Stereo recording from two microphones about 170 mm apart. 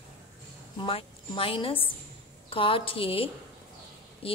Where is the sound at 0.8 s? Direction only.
30° left (ahead or behind).